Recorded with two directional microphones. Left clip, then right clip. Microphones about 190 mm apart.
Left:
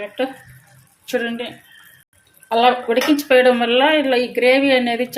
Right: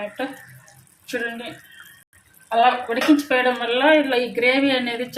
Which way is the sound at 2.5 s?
60° left (ahead or behind).